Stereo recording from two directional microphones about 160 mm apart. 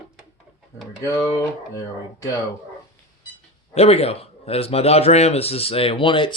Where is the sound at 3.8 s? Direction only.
40° left (ahead or behind).